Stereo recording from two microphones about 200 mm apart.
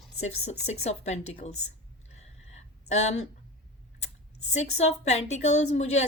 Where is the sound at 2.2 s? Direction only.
35° left (ahead or behind).